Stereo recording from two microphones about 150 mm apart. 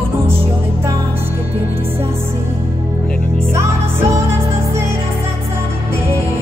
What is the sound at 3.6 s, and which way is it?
Music, 15° right (ahead or behind).